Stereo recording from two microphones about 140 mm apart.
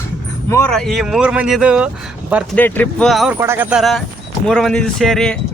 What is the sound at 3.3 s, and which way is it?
Speech, 20° right (ahead or behind).